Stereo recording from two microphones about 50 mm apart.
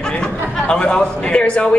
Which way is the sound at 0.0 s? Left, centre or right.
Centre.